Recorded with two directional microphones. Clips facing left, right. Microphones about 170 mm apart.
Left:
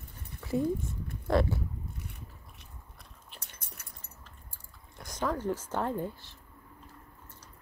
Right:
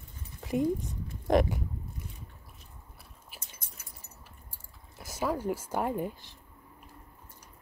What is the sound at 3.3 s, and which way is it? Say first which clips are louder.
Keys jangling: even; 5° right (ahead or behind).